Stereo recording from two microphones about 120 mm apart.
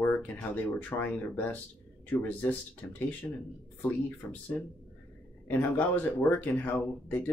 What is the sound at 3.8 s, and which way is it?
Speech, 10° left (ahead or behind).